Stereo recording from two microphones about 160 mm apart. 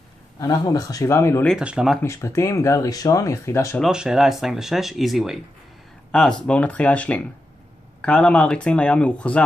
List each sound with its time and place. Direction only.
0.4 s speech: 20° left (ahead or behind)
1.6 s speech: 5° right (ahead or behind)
2.0 s speech: 15° left (ahead or behind)
3.8 s speech: 5° right (ahead or behind)